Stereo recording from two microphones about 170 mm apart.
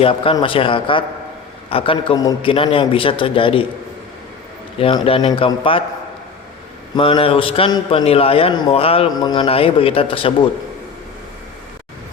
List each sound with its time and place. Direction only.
0.0 s a man's voice: 30° left (ahead or behind)
4.8 s a man's voice: 30° left (ahead or behind)
6.9 s a man's voice: 30° left (ahead or behind)